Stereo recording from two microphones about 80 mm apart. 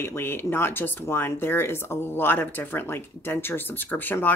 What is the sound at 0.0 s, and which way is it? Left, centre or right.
Speech, left.